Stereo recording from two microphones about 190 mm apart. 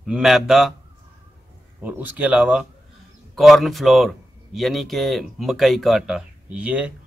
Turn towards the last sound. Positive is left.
turn(degrees=-5)  # may be behind; listen again after turning